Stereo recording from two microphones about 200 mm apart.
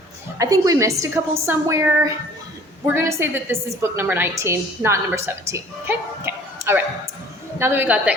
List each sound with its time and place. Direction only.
0.3 s a woman's voice: 15° right (ahead or behind)